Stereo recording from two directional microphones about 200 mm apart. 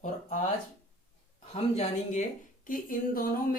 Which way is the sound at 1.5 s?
35° left (ahead or behind).